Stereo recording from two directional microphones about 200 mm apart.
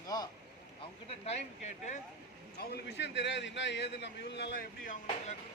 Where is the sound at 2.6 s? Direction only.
55° left (ahead or behind).